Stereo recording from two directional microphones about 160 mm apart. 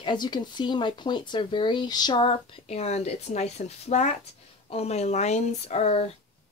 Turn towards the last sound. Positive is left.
turn(degrees=40)  # may be behind; listen again after turning